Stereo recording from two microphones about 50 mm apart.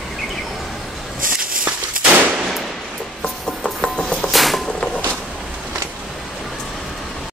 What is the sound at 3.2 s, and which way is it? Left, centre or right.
Music, centre.